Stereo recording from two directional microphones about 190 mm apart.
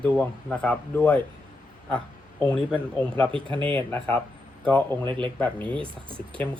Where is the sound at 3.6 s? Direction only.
10° left (ahead or behind).